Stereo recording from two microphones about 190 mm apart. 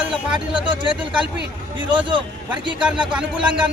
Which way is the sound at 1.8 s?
25° right (ahead or behind).